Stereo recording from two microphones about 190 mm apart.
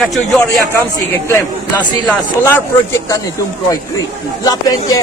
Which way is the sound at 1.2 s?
10° left (ahead or behind).